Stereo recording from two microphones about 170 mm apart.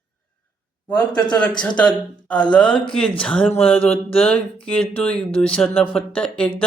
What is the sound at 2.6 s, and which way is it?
Speech, 30° left (ahead or behind).